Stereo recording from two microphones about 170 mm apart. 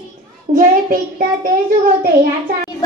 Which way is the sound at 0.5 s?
35° right (ahead or behind).